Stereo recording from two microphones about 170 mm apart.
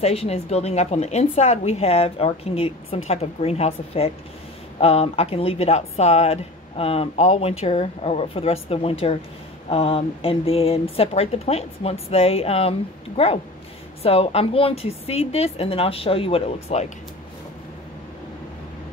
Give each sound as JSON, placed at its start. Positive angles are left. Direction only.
{"t": 0.0, "sound": "speech", "side_deg": 35}